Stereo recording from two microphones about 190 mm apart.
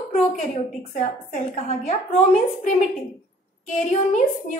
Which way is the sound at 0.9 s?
40° left (ahead or behind).